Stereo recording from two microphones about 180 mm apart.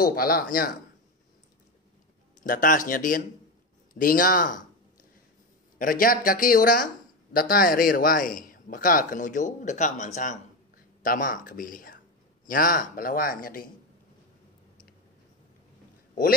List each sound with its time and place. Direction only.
0.0 s speech: 55° left (ahead or behind)
2.4 s a man's voice: 45° left (ahead or behind)
5.8 s a man's voice: 55° left (ahead or behind)